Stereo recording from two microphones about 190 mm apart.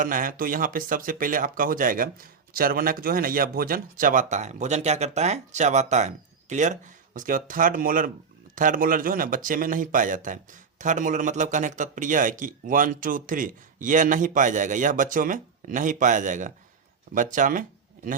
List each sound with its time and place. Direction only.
0.0 s speech: 45° right (ahead or behind)